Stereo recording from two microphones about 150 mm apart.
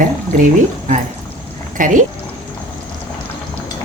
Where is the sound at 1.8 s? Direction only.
55° right (ahead or behind).